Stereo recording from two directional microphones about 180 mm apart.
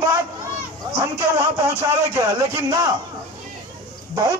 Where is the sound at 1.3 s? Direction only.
15° right (ahead or behind).